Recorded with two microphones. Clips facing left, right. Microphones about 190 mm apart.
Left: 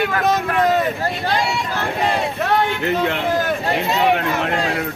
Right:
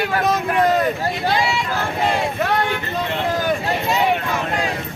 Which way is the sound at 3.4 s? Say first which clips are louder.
Left 1 dB; centre (ahead or behind).